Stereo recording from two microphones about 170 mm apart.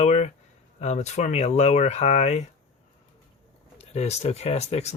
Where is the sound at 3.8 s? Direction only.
40° left (ahead or behind).